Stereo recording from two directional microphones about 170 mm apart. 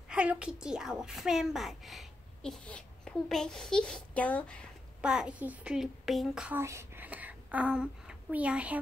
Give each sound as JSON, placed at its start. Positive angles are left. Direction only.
{"t": 0.1, "sound": "a woman's voice", "side_deg": -5}
{"t": 5.0, "sound": "a child's voice", "side_deg": -5}